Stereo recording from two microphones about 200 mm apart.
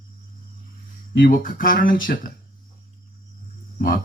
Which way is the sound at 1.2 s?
45° left (ahead or behind).